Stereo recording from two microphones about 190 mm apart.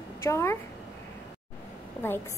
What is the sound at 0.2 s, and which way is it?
Speech, 15° left (ahead or behind).